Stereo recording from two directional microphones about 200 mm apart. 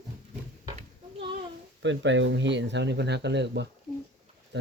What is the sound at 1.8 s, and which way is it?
Speech, 65° right (ahead or behind).